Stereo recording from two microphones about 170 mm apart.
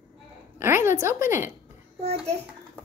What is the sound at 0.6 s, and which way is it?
Speech, 15° right (ahead or behind).